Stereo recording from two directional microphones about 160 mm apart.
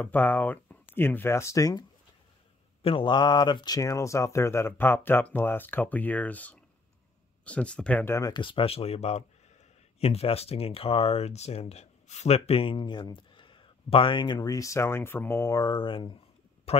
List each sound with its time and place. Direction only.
0.0 s speech: 10° left (ahead or behind)
2.8 s speech: 30° left (ahead or behind)